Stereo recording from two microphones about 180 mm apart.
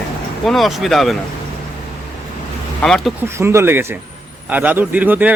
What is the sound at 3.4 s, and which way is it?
Speech, 15° right (ahead or behind).